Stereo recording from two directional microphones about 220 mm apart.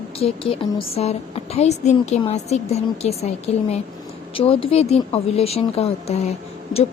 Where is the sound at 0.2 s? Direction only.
25° left (ahead or behind).